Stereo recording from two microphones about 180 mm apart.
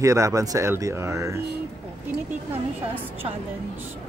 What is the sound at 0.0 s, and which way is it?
Speech, 15° right (ahead or behind).